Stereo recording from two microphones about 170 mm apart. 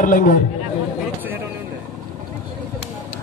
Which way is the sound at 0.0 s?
50° left (ahead or behind).